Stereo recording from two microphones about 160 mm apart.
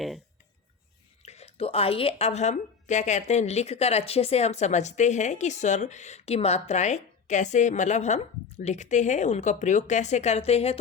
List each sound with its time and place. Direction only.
1.2 s a woman's voice: 40° left (ahead or behind)